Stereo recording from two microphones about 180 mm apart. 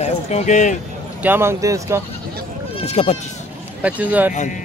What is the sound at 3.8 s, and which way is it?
Speech, 10° right (ahead or behind).